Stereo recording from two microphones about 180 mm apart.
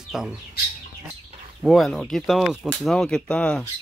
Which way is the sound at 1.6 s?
Centre (ahead or behind).